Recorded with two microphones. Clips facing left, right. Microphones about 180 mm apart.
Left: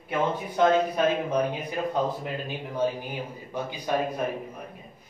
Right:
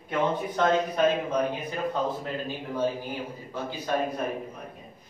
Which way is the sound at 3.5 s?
15° left (ahead or behind).